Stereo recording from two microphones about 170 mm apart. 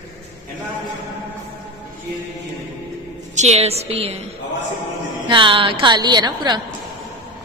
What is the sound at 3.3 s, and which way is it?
Speech, 40° right (ahead or behind).